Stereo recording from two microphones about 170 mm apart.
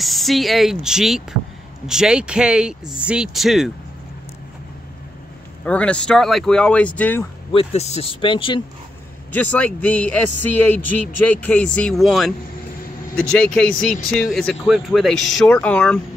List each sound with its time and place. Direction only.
0.0 s speech: centre (ahead or behind)
5.7 s a man's voice: 5° left (ahead or behind)
7.5 s speech: 40° left (ahead or behind)
9.3 s a man's voice: 10° left (ahead or behind)